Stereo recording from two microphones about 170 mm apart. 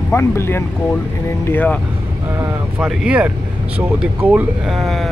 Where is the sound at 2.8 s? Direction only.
5° right (ahead or behind).